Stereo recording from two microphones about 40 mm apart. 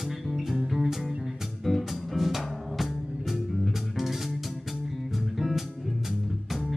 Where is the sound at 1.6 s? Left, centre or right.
Centre.